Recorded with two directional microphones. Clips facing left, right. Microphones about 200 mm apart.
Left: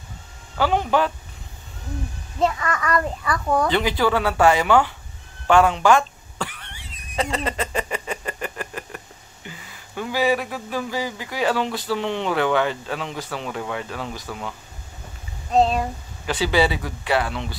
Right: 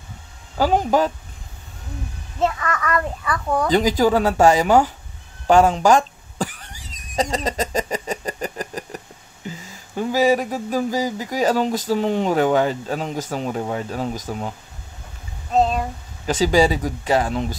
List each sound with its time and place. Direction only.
0.6 s speech: 40° right (ahead or behind)
2.4 s a child's voice: centre (ahead or behind)
3.7 s speech: 40° right (ahead or behind)
5.5 s a sound: 40° right (ahead or behind)
9.7 s speech: 40° right (ahead or behind)
15.5 s a child's voice: centre (ahead or behind)
16.3 s speech: 45° right (ahead or behind)